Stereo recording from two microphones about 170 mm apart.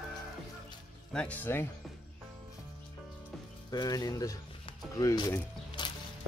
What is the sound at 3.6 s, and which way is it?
Speech, 25° left (ahead or behind).